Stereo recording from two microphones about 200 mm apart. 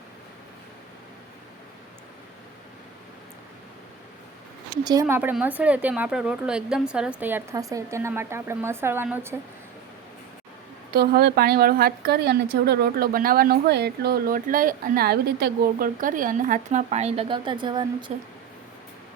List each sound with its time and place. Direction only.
4.8 s speech: 20° right (ahead or behind)
10.9 s a woman's voice: 50° right (ahead or behind); by 17.8 s 25° right (ahead or behind)
18.1 s speech: 35° right (ahead or behind)